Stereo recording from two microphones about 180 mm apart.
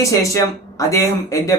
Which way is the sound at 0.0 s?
15° left (ahead or behind).